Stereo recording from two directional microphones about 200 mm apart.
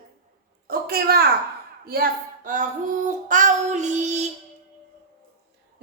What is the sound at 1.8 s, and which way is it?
A woman's voice, 45° right (ahead or behind).